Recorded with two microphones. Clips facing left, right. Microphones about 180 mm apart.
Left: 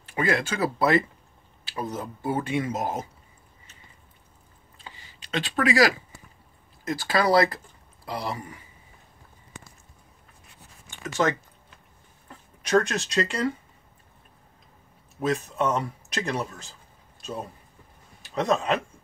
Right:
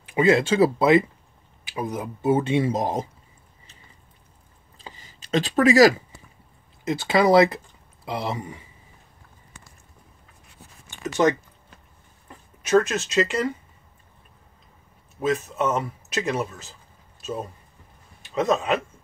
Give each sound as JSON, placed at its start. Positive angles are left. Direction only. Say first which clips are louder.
{"t": 0.0, "sound": "speech", "louder": "right 7 dB", "side_deg": -20}
{"t": 4.8, "sound": "a sound", "louder": "right 3 dB", "side_deg": -40}
{"t": 6.8, "sound": "speech", "louder": "right 4 dB", "side_deg": -20}
{"t": 11.1, "sound": "speech", "louder": "right 4 dB", "side_deg": -20}
{"t": 12.3, "sound": "speech", "louder": "right 3 dB", "side_deg": -5}
{"t": 15.2, "sound": "speech", "louder": "right 2 dB", "side_deg": 0}
{"t": 17.2, "sound": "a sound", "louder": "right 4 dB", "side_deg": -5}
{"t": 18.2, "sound": "speech", "louder": "right 2 dB", "side_deg": 0}